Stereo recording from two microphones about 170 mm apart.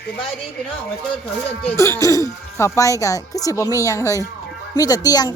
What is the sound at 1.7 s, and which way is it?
A woman's voice, 15° left (ahead or behind).